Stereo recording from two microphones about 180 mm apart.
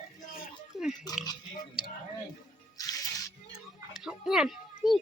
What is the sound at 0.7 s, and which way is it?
Pig, centre (ahead or behind).